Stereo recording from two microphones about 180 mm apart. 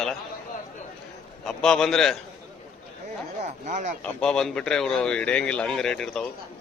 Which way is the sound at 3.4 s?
40° right (ahead or behind).